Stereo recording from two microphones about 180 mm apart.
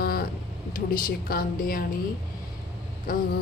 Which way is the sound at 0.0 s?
55° left (ahead or behind).